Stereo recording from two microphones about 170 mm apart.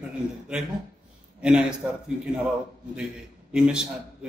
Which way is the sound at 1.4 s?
5° right (ahead or behind).